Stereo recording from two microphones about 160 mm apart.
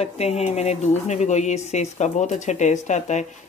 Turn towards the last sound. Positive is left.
turn(degrees=45)  # may be behind; listen again after turning